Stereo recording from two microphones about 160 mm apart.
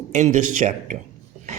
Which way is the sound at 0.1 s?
50° right (ahead or behind).